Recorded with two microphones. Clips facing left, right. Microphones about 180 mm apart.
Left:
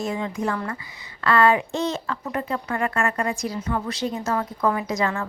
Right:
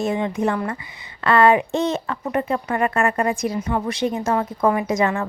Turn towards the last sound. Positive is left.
turn(degrees=-20)  # may be behind; listen again after turning